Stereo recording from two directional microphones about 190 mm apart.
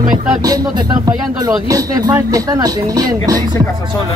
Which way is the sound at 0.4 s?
20° right (ahead or behind).